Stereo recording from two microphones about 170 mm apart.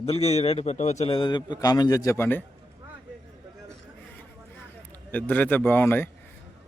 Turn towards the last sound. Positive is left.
turn(degrees=10)  # may be behind; listen again after turning